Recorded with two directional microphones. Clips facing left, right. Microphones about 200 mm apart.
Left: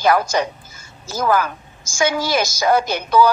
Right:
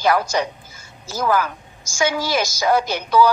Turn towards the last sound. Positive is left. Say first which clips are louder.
# left 1 dB
turn(degrees=50)  # may be behind; listen again after turning